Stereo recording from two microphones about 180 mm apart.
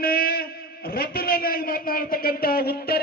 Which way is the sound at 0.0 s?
55° left (ahead or behind).